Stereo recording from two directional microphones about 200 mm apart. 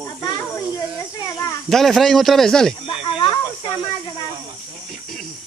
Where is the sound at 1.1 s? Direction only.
15° left (ahead or behind).